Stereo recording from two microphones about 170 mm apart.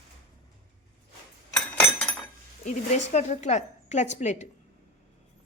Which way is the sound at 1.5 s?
10° left (ahead or behind).